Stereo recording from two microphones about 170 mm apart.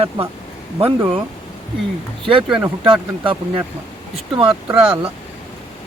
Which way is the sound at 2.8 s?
30° right (ahead or behind).